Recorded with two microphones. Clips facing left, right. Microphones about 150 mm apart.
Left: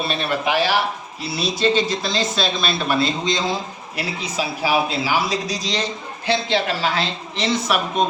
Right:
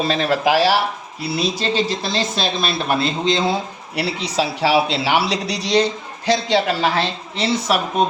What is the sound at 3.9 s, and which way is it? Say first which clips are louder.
Speech: right 5 dB; 80° right.